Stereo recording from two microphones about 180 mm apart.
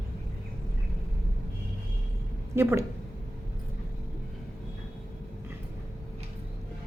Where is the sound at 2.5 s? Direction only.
15° right (ahead or behind).